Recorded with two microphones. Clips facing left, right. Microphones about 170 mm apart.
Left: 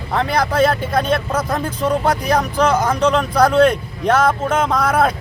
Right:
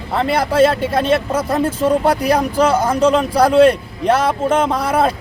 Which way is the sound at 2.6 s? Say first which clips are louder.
Right 2 dB; 30° right (ahead or behind).